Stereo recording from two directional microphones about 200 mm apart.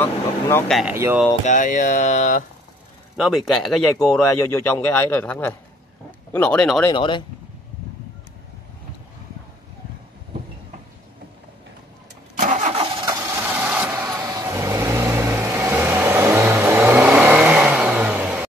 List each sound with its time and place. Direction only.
0.0 s a sound: 10° left (ahead or behind)
0.7 s speech: 10° right (ahead or behind)
1.4 s speech: 40° left (ahead or behind)
3.2 s speech: centre (ahead or behind)
4.4 s a man's voice: 10° left (ahead or behind)
6.9 s speech: 25° left (ahead or behind)
12.4 s engine starting: 35° right (ahead or behind)
13.0 s vehicle: 15° right (ahead or behind)